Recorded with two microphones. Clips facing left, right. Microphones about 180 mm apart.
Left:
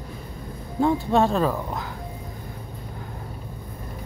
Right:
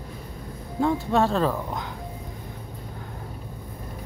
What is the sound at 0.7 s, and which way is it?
Speech, 20° left (ahead or behind).